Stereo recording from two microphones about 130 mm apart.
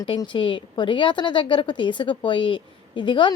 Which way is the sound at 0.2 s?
40° left (ahead or behind).